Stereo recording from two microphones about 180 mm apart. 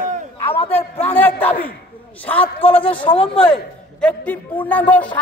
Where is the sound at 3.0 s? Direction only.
30° left (ahead or behind).